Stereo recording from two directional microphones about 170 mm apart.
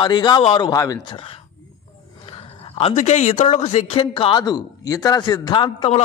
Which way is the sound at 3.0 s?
40° left (ahead or behind).